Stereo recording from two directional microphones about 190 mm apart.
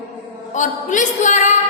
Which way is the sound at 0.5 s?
40° left (ahead or behind).